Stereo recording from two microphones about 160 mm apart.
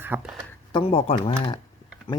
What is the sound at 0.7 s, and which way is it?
Speech, 35° left (ahead or behind).